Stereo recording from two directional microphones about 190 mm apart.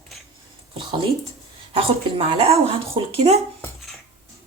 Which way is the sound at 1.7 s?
30° right (ahead or behind).